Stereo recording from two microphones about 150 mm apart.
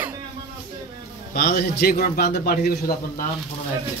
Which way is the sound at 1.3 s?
90° left.